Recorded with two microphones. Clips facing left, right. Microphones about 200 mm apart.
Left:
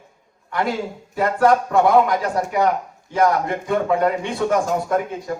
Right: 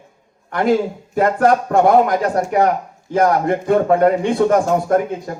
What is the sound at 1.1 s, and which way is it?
A man's voice, 50° right (ahead or behind).